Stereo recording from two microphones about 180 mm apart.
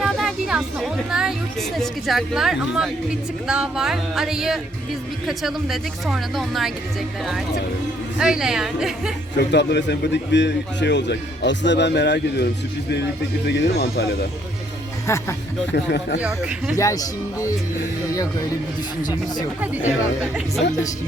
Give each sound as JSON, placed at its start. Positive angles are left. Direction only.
{"t": 0.0, "sound": "music", "side_deg": 0}
{"t": 1.7, "sound": "speech", "side_deg": 0}
{"t": 8.2, "sound": "speech", "side_deg": -5}
{"t": 9.4, "sound": "a man's voice", "side_deg": 70}
{"t": 13.5, "sound": "speech", "side_deg": 65}
{"t": 15.0, "sound": "speech", "side_deg": 15}
{"t": 15.7, "sound": "a man's voice", "side_deg": 70}
{"t": 16.2, "sound": "speech", "side_deg": -5}
{"t": 16.7, "sound": "speech", "side_deg": 20}
{"t": 19.9, "sound": "speech", "side_deg": -5}